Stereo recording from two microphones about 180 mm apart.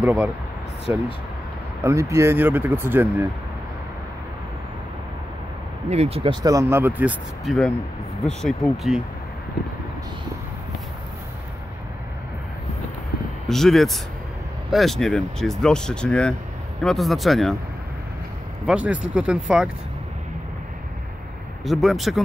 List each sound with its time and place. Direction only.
0.0 s speech: 5° right (ahead or behind)
5.9 s speech: 35° right (ahead or behind)
6.4 s speech: 15° right (ahead or behind); by 9.0 s centre (ahead or behind)
13.5 s speech: centre (ahead or behind)
18.7 s speech: 5° right (ahead or behind)
21.6 s speech: centre (ahead or behind)